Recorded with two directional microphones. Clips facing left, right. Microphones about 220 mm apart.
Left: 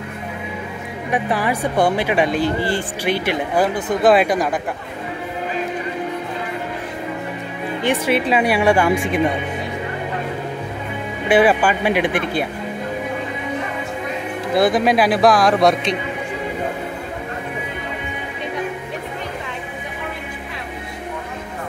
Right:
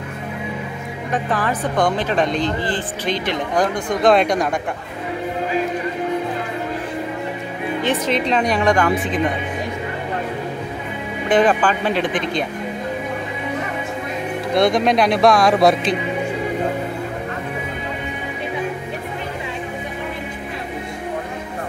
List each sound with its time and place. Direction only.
1.1 s speech: 10° left (ahead or behind)
7.8 s speech: 10° left (ahead or behind)
11.2 s speech: 10° left (ahead or behind)
14.5 s speech: 5° left (ahead or behind)